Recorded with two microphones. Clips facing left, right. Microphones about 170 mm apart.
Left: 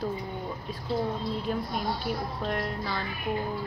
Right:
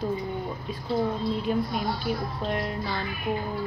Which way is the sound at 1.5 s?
5° right (ahead or behind).